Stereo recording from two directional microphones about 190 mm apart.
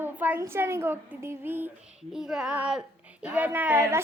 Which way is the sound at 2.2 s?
5° right (ahead or behind).